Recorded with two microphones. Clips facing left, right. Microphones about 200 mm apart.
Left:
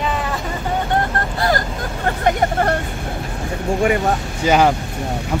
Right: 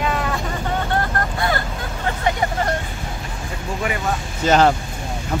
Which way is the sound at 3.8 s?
45° left (ahead or behind).